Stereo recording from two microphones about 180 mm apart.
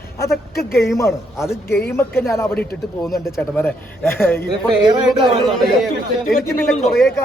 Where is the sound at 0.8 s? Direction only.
15° left (ahead or behind).